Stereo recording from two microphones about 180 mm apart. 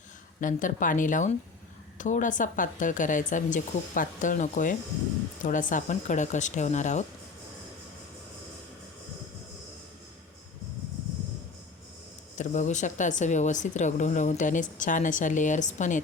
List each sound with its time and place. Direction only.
0.3 s speech: 45° left (ahead or behind)
12.4 s speech: 40° left (ahead or behind)